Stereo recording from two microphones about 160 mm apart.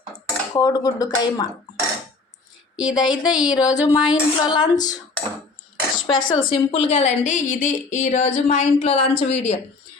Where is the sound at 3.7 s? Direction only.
25° left (ahead or behind); by 9.6 s 40° left (ahead or behind).